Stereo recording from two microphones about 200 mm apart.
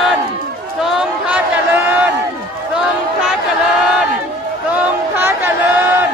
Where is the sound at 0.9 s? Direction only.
5° right (ahead or behind).